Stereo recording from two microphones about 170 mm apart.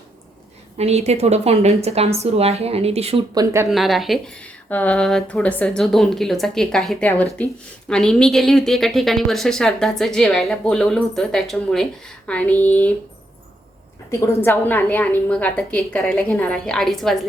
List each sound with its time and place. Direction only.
0.8 s a woman's voice: 40° right (ahead or behind)
3.3 s speech: 15° right (ahead or behind)
3.7 s a woman's voice: centre (ahead or behind)
14.1 s a woman's voice: 15° left (ahead or behind)